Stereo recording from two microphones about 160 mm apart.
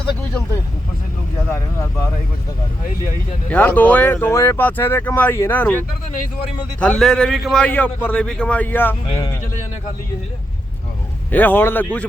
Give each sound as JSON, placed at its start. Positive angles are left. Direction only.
{"t": 1.5, "sound": "speech", "side_deg": 20}
{"t": 2.8, "sound": "speech", "side_deg": 55}
{"t": 3.5, "sound": "speech", "side_deg": 10}
{"t": 11.3, "sound": "speech", "side_deg": 10}